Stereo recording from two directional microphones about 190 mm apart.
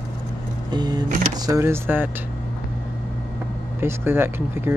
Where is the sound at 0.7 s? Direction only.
20° right (ahead or behind).